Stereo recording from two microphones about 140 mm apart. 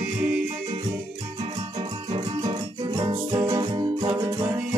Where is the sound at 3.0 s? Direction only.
30° right (ahead or behind).